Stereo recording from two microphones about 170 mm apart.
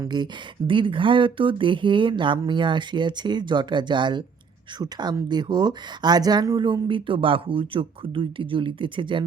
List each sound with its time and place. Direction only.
0.0 s speech: 25° right (ahead or behind)